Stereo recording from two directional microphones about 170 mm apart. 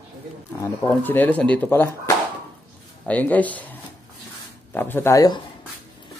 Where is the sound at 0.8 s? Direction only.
10° left (ahead or behind).